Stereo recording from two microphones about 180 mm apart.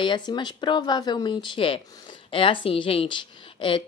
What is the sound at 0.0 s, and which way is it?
A woman's voice, 25° left (ahead or behind).